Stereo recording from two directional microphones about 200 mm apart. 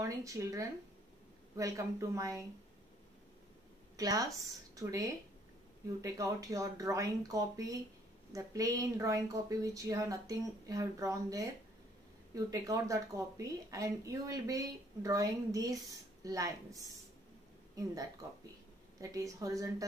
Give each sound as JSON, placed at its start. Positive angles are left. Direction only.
{"t": 0.0, "sound": "a woman's voice", "side_deg": -15}
{"t": 3.9, "sound": "a woman's voice", "side_deg": -20}
{"t": 18.9, "sound": "a woman's voice", "side_deg": -15}